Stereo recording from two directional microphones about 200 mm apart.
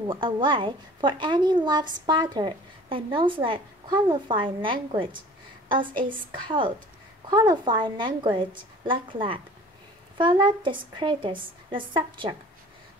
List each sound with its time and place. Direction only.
0.0 s a woman's voice: 25° right (ahead or behind)